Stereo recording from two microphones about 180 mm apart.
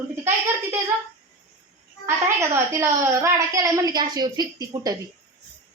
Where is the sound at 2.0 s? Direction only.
15° right (ahead or behind).